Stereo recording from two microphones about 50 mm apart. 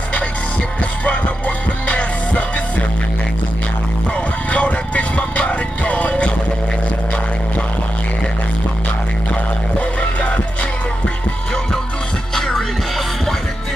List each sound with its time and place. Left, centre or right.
1.9 s music: left
4.5 s music: left
9.3 s music: left
12.4 s music: centre